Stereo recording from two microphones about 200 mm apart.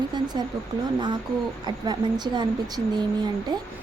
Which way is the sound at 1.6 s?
20° right (ahead or behind).